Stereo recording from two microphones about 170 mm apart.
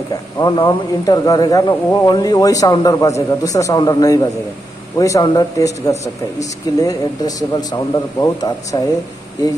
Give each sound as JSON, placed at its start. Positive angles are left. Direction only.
{"t": 0.4, "sound": "speech", "side_deg": 25}